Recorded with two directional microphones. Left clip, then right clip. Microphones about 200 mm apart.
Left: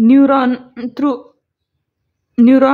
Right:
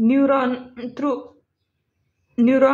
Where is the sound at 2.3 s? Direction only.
30° left (ahead or behind).